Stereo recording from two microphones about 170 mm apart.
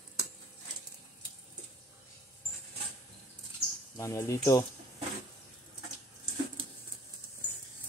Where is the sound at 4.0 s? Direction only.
15° left (ahead or behind).